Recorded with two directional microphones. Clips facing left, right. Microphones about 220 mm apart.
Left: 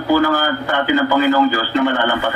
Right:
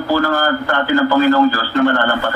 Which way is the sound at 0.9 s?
15° left (ahead or behind).